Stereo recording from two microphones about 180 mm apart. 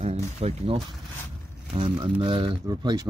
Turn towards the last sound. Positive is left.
turn(degrees=-20)  # may be behind; listen again after turning